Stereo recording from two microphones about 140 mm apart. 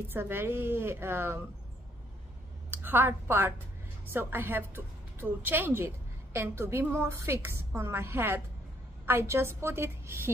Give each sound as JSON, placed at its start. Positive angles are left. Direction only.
{"t": 0.1, "sound": "a woman's voice", "side_deg": -15}
{"t": 2.7, "sound": "a woman's voice", "side_deg": -15}